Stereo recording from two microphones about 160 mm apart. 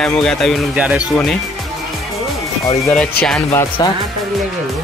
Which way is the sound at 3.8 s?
25° left (ahead or behind).